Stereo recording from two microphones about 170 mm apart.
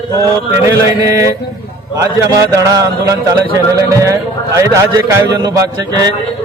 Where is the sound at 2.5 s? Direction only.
20° right (ahead or behind).